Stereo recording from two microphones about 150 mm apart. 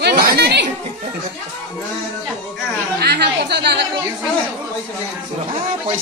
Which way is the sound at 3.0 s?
90° right.